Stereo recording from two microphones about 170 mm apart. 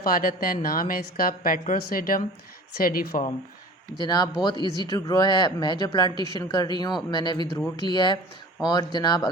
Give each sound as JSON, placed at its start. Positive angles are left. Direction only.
{"t": 0.0, "sound": "a woman's voice", "side_deg": 55}
{"t": 4.0, "sound": "speech", "side_deg": 25}